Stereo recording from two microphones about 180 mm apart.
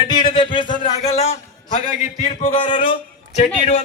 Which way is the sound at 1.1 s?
35° left (ahead or behind).